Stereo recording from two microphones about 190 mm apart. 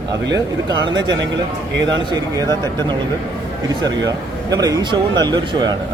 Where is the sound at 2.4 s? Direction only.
15° left (ahead or behind).